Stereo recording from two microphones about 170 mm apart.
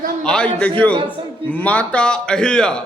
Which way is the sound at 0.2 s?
5° left (ahead or behind).